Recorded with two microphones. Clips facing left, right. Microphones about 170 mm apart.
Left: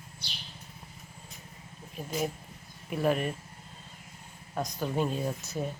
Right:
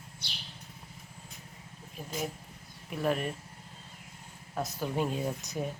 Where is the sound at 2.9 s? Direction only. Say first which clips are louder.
Left 3 dB; 5° left (ahead or behind).